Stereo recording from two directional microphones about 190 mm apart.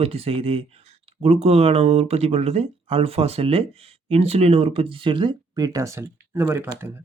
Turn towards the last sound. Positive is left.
turn(degrees=-10)  # may be behind; listen again after turning